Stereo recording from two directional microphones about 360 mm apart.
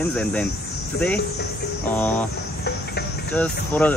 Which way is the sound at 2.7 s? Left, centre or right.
Left.